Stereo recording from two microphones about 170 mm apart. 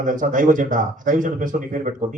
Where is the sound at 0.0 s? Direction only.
50° right (ahead or behind).